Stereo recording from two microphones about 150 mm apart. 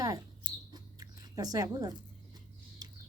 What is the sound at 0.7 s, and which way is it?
Chewing, 25° right (ahead or behind).